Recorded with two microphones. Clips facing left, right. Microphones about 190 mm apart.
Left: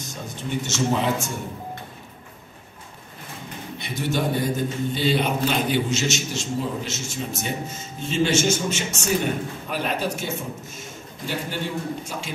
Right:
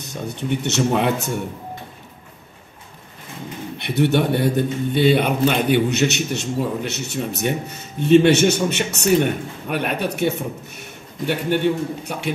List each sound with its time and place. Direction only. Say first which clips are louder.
0.0 s a man's voice: right 5 dB; 65° right (ahead or behind)
3.7 s a man's voice: right 8 dB; 65° right (ahead or behind)